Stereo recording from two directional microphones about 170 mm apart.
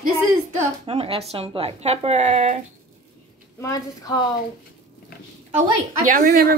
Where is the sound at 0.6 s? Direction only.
35° right (ahead or behind).